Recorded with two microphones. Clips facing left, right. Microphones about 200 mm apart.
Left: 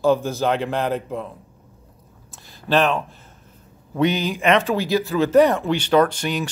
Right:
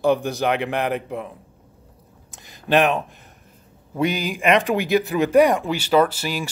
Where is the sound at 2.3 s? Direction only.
15° right (ahead or behind).